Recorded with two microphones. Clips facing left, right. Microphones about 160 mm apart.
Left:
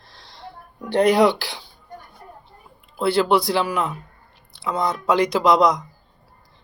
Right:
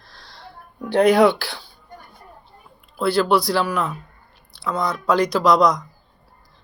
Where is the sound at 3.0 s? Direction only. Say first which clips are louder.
Even; 25° left (ahead or behind).